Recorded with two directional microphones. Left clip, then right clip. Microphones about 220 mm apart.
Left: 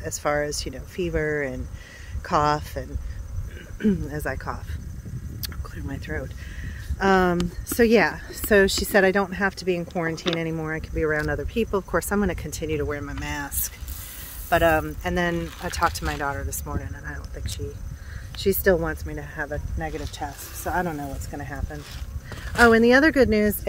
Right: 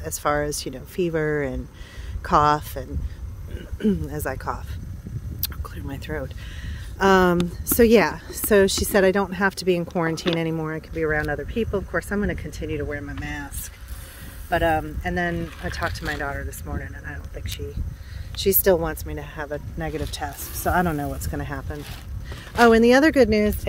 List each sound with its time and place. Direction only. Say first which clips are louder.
0.0 s a woman's voice: right 1 dB; 20° right (ahead or behind)
5.4 s a sound: right 2 dB; 20° right (ahead or behind)
7.0 s a woman's voice: right 3 dB; 20° right (ahead or behind)
10.4 s a woman's voice: right 1 dB; 15° right (ahead or behind)
11.0 s speech: right 1 dB; 5° left (ahead or behind)
11.5 s speech: left 3 dB; 15° left (ahead or behind); by 13.5 s 35° left (ahead or behind)
14.5 s speech: left 2 dB; 30° left (ahead or behind)
16.0 s speech: even; 15° left (ahead or behind)
18.3 s speech: right 1 dB; 15° right (ahead or behind)
19.9 s speech: right 3 dB; 40° right (ahead or behind)
22.6 s a woman's voice: right 1 dB; 15° right (ahead or behind)